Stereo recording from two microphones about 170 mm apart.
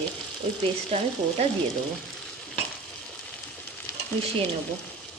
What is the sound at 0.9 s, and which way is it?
Frying, 35° right (ahead or behind).